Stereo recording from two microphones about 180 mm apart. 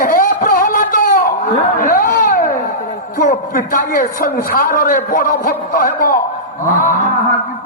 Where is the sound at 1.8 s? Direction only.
50° left (ahead or behind).